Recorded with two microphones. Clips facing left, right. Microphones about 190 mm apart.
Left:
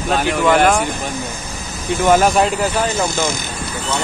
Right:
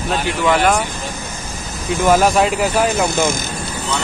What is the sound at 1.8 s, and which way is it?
Speech, centre (ahead or behind).